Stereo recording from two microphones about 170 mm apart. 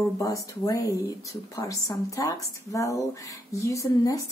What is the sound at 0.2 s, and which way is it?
A woman's voice, 20° left (ahead or behind).